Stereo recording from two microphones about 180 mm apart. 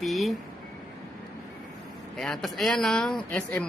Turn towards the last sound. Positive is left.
turn(degrees=5)  # may be behind; listen again after turning